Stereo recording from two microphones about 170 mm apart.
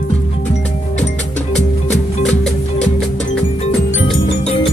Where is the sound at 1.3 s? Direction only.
40° left (ahead or behind).